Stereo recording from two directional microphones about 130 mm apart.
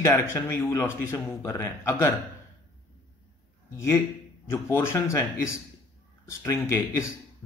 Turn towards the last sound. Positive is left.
turn(degrees=20)  # may be behind; listen again after turning